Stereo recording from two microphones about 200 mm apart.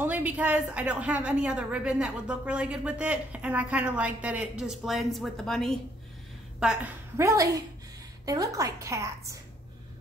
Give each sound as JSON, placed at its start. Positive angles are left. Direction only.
{"t": 0.0, "sound": "a woman's voice", "side_deg": -10}
{"t": 6.6, "sound": "a woman's voice", "side_deg": -10}